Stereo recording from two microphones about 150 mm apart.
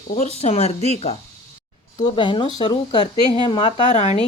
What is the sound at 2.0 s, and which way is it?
Speech, 30° left (ahead or behind).